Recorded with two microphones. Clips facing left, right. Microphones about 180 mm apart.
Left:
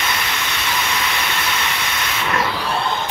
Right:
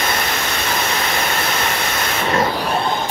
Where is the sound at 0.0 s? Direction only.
40° right (ahead or behind).